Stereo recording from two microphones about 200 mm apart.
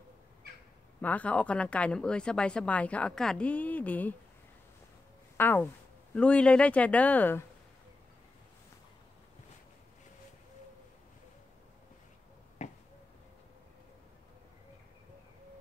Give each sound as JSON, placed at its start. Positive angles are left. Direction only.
{"t": 1.0, "sound": "a woman's voice", "side_deg": 5}
{"t": 5.4, "sound": "a woman's voice", "side_deg": 10}
{"t": 12.6, "sound": "finger snapping", "side_deg": 35}